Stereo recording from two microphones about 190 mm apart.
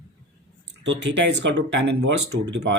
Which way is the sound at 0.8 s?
65° right (ahead or behind).